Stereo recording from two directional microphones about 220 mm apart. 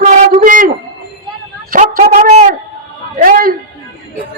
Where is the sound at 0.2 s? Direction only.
35° right (ahead or behind).